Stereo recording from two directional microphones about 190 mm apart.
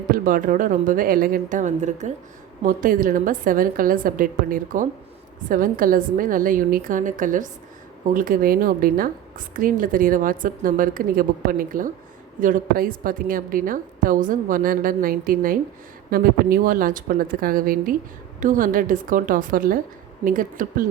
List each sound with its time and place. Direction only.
0.1 s a woman's voice: 45° right (ahead or behind)